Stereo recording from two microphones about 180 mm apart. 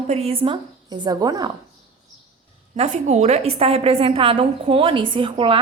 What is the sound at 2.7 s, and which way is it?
A woman's voice, 40° right (ahead or behind).